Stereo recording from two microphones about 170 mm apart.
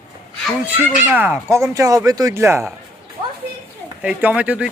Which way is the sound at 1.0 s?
10° right (ahead or behind).